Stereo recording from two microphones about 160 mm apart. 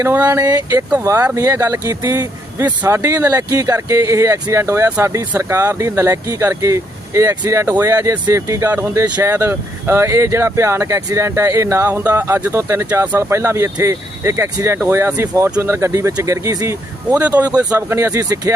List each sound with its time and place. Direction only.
0.0 s speech: 15° right (ahead or behind)
0.9 s speech: 15° right (ahead or behind)
17.2 s speech: 10° right (ahead or behind)
17.4 s speech: 25° right (ahead or behind)